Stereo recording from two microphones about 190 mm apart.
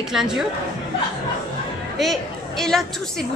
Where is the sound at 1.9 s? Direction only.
Centre (ahead or behind).